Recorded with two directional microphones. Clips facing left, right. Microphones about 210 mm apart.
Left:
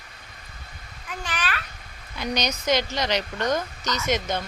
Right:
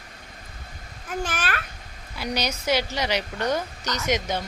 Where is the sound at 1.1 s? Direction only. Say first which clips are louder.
Right 3 dB; 45° right (ahead or behind).